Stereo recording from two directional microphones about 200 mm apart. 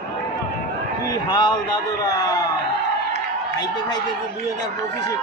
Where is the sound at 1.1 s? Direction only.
20° left (ahead or behind).